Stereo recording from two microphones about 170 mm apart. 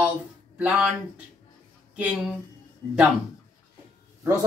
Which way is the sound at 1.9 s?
5° right (ahead or behind).